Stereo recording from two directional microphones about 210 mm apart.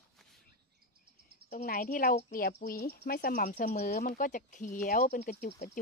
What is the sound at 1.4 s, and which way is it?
Speech, 40° left (ahead or behind).